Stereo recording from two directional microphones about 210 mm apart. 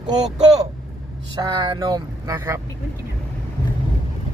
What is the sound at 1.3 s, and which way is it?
Speech, 20° right (ahead or behind).